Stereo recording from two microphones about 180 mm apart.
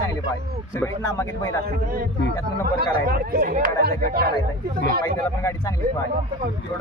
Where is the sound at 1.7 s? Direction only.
55° right (ahead or behind).